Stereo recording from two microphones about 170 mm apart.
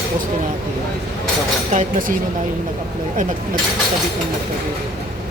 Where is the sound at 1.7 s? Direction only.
55° right (ahead or behind).